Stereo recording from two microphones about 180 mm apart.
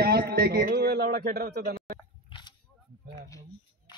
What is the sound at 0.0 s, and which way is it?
A man's voice, 60° right (ahead or behind).